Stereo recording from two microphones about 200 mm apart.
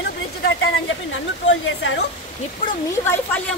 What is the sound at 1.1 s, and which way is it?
Speech, 70° left (ahead or behind).